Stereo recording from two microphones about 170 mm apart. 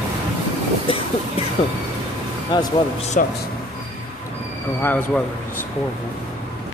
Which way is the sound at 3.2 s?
50° left (ahead or behind).